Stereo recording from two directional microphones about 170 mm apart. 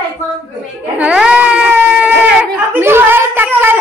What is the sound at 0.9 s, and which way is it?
Baby cry, 5° right (ahead or behind).